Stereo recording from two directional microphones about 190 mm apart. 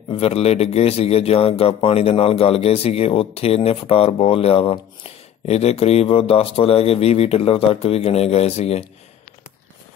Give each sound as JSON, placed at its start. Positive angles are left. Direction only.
{"t": 0.1, "sound": "a man's voice", "side_deg": 30}